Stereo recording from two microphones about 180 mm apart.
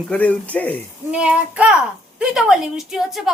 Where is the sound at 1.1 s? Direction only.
5° right (ahead or behind).